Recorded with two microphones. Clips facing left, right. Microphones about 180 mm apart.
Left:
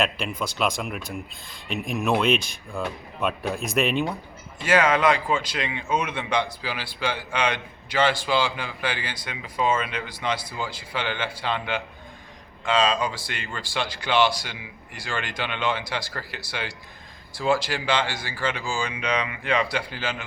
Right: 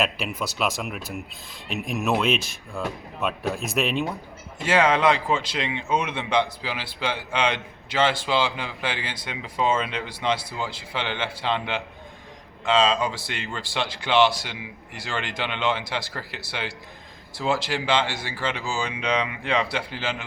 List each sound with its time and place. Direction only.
0.0 s speech: 5° right (ahead or behind)
4.6 s a man's voice: 25° right (ahead or behind)